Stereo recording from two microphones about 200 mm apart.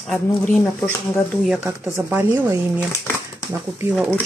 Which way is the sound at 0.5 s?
10° left (ahead or behind).